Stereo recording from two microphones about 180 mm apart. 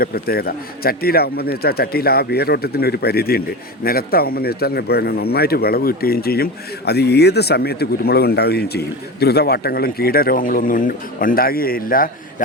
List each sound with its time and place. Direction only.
0.0 s speech: 55° left (ahead or behind)